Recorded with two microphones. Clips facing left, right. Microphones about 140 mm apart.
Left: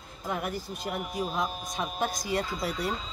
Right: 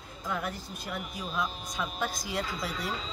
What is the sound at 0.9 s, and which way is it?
Speech, 50° left (ahead or behind).